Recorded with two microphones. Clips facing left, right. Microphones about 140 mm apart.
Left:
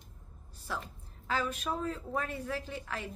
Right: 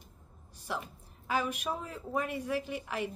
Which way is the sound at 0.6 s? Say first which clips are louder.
Right 2 dB; 15° right (ahead or behind).